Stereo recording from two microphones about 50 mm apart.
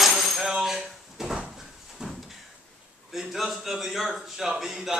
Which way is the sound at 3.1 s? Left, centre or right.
Centre.